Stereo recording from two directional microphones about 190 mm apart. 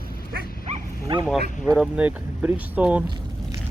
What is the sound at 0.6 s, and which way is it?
Dog, 35° right (ahead or behind).